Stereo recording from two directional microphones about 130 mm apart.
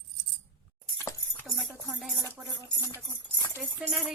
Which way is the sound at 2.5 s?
20° left (ahead or behind).